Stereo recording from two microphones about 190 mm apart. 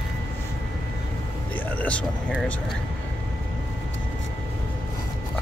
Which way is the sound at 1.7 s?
5° left (ahead or behind).